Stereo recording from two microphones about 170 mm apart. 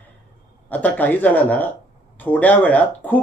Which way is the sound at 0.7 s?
10° left (ahead or behind).